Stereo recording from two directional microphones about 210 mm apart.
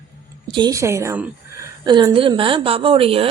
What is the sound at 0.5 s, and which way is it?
A woman's voice, 20° right (ahead or behind).